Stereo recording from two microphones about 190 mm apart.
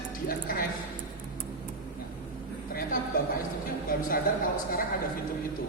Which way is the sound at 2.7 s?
50° left (ahead or behind).